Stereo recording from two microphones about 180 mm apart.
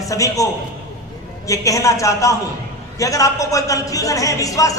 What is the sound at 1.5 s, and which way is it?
A man's voice, 20° left (ahead or behind).